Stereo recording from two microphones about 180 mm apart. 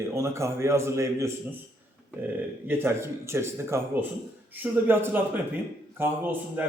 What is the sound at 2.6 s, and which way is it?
A man's voice, 15° right (ahead or behind).